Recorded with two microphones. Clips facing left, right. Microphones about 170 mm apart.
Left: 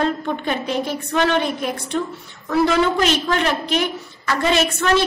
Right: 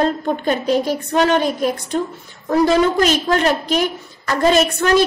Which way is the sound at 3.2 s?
40° right (ahead or behind).